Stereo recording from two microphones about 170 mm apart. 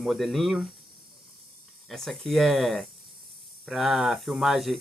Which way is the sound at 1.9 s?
Centre (ahead or behind).